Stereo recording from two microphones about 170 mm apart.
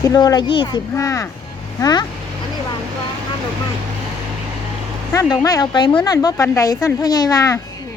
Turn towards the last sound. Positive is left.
turn(degrees=20)  # may be behind; listen again after turning